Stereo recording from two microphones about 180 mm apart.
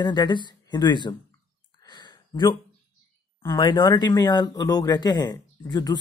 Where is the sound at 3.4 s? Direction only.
25° left (ahead or behind).